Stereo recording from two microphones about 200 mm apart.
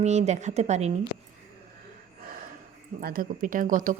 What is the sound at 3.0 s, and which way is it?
Speech, 45° right (ahead or behind).